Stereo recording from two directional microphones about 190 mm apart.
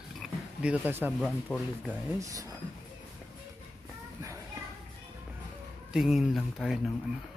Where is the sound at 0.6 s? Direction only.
10° right (ahead or behind).